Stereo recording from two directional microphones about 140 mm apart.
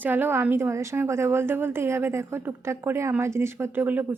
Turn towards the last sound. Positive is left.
turn(degrees=-15)  # may be behind; listen again after turning